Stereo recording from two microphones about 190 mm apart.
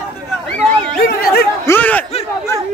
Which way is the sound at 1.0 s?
50° left (ahead or behind).